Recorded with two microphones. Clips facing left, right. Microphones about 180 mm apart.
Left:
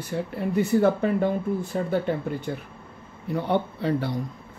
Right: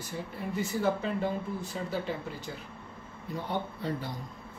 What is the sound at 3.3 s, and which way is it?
Speech, 65° left (ahead or behind).